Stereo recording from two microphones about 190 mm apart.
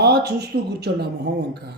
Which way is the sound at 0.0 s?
60° right (ahead or behind).